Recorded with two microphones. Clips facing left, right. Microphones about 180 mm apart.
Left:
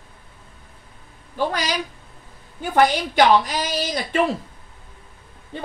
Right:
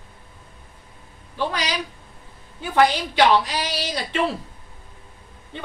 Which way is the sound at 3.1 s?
45° left (ahead or behind).